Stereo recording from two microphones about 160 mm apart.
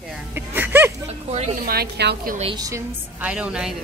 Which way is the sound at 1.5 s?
70° right (ahead or behind).